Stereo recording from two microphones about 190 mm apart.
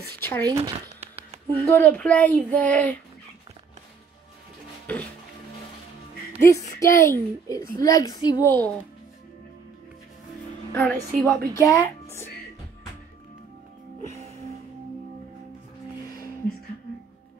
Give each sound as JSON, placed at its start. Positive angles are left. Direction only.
{"t": 0.2, "sound": "speech", "side_deg": 10}
{"t": 0.5, "sound": "speech", "side_deg": -30}
{"t": 1.7, "sound": "speech", "side_deg": 10}
{"t": 4.9, "sound": "music", "side_deg": 10}
{"t": 6.5, "sound": "speech", "side_deg": 15}
{"t": 10.7, "sound": "a woman's voice", "side_deg": 10}